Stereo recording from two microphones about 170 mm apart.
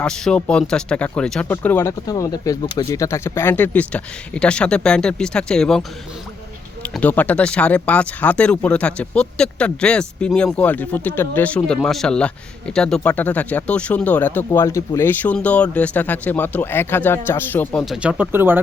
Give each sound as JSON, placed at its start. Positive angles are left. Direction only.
{"t": 0.0, "sound": "speech", "side_deg": 5}
{"t": 6.9, "sound": "speech", "side_deg": 10}
{"t": 17.8, "sound": "speech", "side_deg": -5}